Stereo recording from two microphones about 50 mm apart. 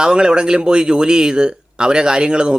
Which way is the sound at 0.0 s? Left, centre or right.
Centre.